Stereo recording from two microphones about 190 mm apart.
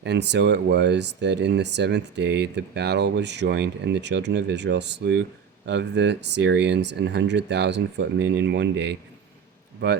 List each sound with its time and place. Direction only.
0.0 s speech: 65° right (ahead or behind)